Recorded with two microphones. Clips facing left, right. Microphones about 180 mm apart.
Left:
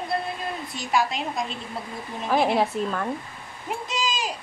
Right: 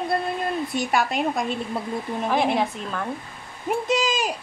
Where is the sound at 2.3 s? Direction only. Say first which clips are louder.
Left 2 dB; 5° left (ahead or behind).